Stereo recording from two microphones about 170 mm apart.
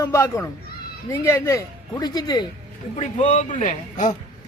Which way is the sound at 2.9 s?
40° left (ahead or behind).